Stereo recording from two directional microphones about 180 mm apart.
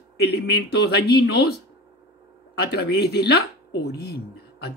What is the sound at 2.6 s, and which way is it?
Speech, 65° left (ahead or behind).